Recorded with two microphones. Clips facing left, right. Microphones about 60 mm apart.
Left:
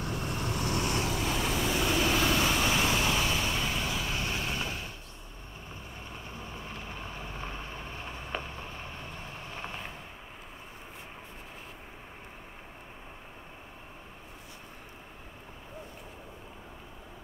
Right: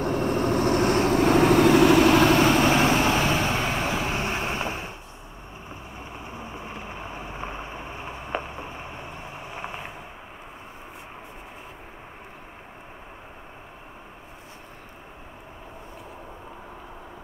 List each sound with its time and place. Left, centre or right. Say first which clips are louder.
0.0 s vehicle: right 11 dB; right
5.7 s vehicle: right 5 dB; centre